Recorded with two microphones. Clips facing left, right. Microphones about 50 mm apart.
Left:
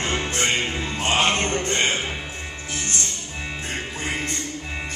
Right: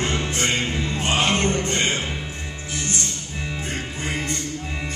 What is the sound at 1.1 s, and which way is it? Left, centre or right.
Music, centre.